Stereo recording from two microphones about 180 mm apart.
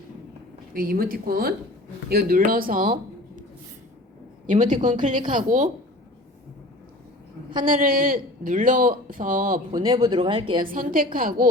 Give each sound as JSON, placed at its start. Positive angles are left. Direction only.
{"t": 0.7, "sound": "speech", "side_deg": -55}
{"t": 4.4, "sound": "speech", "side_deg": -40}
{"t": 7.6, "sound": "speech", "side_deg": -50}
{"t": 9.7, "sound": "speech", "side_deg": -20}
{"t": 10.6, "sound": "speech", "side_deg": -50}